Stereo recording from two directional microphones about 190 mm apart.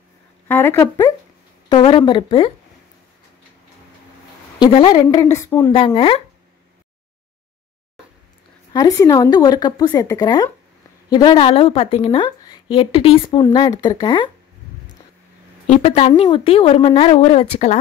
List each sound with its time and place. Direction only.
0.5 s speech: 10° left (ahead or behind)
1.7 s a woman's voice: 25° left (ahead or behind)
4.6 s a woman's voice: 25° left (ahead or behind)
5.7 s a woman's voice: 30° left (ahead or behind)
8.7 s a woman's voice: 15° left (ahead or behind)
15.6 s speech: 35° left (ahead or behind)